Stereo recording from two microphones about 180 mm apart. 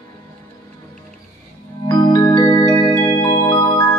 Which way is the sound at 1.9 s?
25° left (ahead or behind).